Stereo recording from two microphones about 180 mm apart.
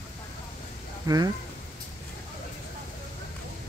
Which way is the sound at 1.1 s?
25° right (ahead or behind).